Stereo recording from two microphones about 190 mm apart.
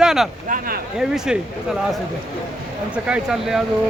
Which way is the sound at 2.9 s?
5° right (ahead or behind).